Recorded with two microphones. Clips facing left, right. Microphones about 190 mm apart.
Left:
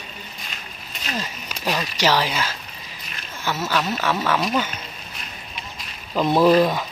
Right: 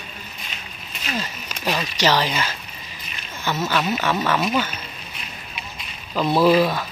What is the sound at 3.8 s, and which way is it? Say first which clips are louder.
Speech: right 1 dB; 5° right (ahead or behind).